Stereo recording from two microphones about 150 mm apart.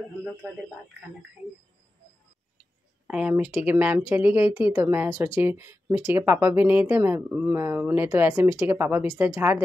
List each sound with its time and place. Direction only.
3.1 s speech: 5° right (ahead or behind)